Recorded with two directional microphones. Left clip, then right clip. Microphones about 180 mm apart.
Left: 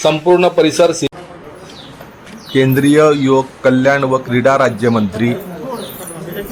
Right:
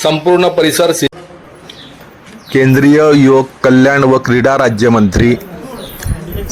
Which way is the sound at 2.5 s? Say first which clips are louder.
Right 2 dB; 25° right (ahead or behind).